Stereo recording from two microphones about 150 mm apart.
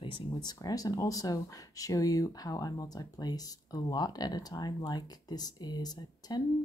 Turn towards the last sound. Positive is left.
turn(degrees=25)  # may be behind; listen again after turning